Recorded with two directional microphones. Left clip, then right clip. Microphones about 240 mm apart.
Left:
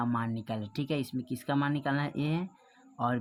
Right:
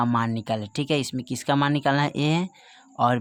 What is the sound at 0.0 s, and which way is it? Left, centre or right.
Speech, right.